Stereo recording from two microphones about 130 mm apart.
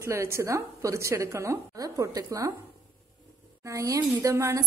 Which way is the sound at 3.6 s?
25° right (ahead or behind).